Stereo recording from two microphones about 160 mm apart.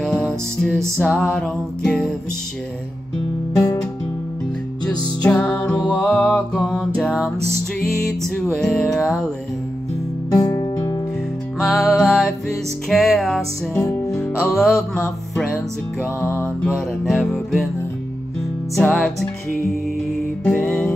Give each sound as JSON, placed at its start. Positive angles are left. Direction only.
{"t": 0.0, "sound": "music", "side_deg": 5}
{"t": 5.2, "sound": "music", "side_deg": 5}
{"t": 8.5, "sound": "music", "side_deg": 5}
{"t": 10.3, "sound": "music", "side_deg": 20}
{"t": 11.6, "sound": "music", "side_deg": 0}
{"t": 16.3, "sound": "music", "side_deg": 10}
{"t": 18.8, "sound": "music", "side_deg": 0}
{"t": 20.4, "sound": "music", "side_deg": 0}